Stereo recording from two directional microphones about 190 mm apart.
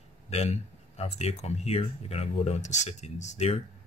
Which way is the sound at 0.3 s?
35° left (ahead or behind).